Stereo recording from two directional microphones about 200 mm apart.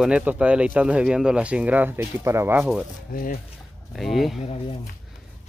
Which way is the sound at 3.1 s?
45° left (ahead or behind).